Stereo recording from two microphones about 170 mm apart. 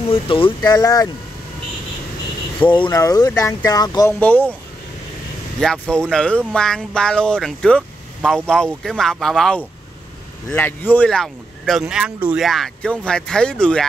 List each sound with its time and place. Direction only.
0.1 s speech: 30° left (ahead or behind)
2.7 s speech: 25° left (ahead or behind)
4.2 s speech: 10° left (ahead or behind)
5.6 s speech: 5° left (ahead or behind)